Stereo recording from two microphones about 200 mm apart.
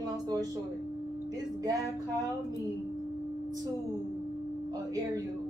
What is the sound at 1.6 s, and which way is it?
Speech, 15° right (ahead or behind).